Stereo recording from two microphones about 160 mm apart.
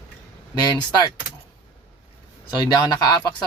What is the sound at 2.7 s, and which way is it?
Speech, 25° left (ahead or behind).